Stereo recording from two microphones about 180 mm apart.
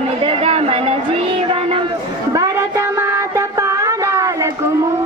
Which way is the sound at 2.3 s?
15° right (ahead or behind).